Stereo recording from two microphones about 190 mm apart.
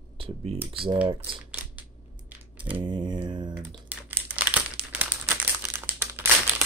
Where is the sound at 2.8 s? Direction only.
25° right (ahead or behind).